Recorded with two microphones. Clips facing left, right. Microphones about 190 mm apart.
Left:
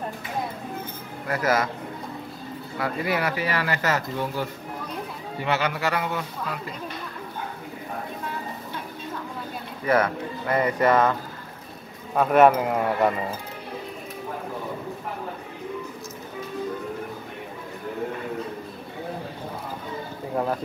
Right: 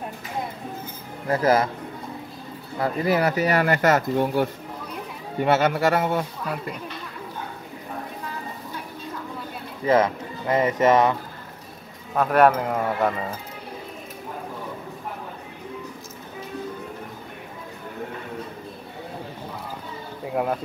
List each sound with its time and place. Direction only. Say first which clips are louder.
1.2 s speech: right 4 dB; 30° right (ahead or behind)
2.8 s speech: right 4 dB; 35° right (ahead or behind)
9.8 s speech: right 2 dB; 25° right (ahead or behind)
12.2 s speech: left 1 dB; centre (ahead or behind)